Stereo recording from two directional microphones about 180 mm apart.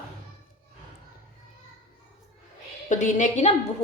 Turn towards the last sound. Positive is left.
turn(degrees=40)  # may be behind; listen again after turning